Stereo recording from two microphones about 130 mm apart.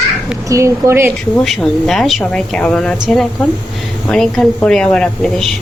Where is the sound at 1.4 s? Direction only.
Centre (ahead or behind).